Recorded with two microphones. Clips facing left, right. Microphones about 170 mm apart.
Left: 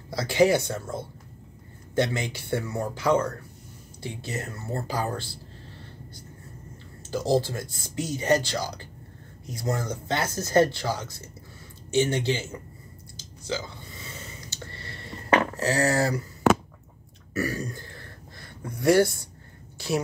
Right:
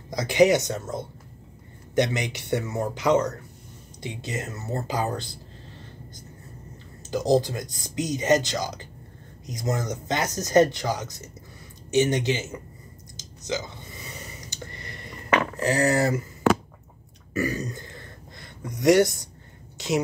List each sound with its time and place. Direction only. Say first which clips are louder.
0.1 s speech: right 2 dB; 15° right (ahead or behind)
7.0 s speech: right 2 dB; 20° right (ahead or behind)
13.2 s a sound: right 2 dB; 15° right (ahead or behind)
15.5 s speech: right 2 dB; 20° right (ahead or behind)
17.3 s throat clearing: right 2 dB; 20° right (ahead or behind)
18.8 s speech: right 2 dB; 20° right (ahead or behind)